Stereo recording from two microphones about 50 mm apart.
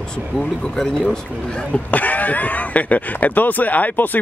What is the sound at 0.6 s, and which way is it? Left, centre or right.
Speech, centre.